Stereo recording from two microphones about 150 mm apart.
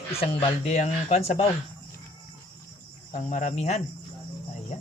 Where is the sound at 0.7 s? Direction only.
45° left (ahead or behind).